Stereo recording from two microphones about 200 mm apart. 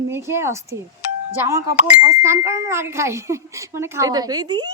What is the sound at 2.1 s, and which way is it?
Speech, 15° right (ahead or behind).